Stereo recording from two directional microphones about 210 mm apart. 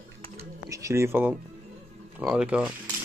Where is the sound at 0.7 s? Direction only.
15° right (ahead or behind).